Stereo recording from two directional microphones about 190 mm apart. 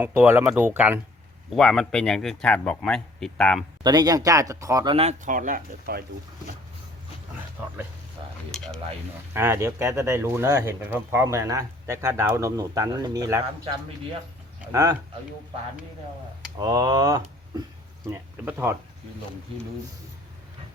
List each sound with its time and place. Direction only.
0.0 s speech: 10° right (ahead or behind)
1.5 s speech: 5° left (ahead or behind)
3.8 s speech: 20° right (ahead or behind)
4.9 s speech: 40° right (ahead or behind); by 6.1 s 55° right (ahead or behind)
8.2 s a sound: 25° right (ahead or behind)
8.5 s speech: centre (ahead or behind)
9.3 s speech: 15° right (ahead or behind)
14.6 s speech: 15° right (ahead or behind)
16.6 s speech: 20° right (ahead or behind)